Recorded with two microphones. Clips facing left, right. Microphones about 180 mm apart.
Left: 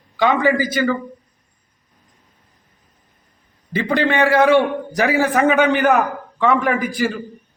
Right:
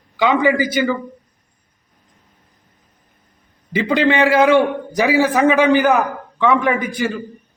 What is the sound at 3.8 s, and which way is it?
Speech, 20° right (ahead or behind).